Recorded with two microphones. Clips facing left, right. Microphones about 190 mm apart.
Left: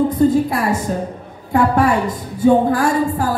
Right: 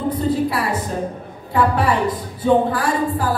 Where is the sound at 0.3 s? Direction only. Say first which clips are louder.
Left 3 dB; 45° left (ahead or behind).